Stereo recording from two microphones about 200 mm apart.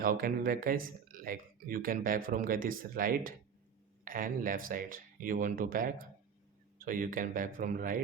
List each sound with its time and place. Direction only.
0.0 s speech: 45° right (ahead or behind)